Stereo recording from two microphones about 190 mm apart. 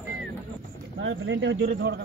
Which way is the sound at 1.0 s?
75° right (ahead or behind).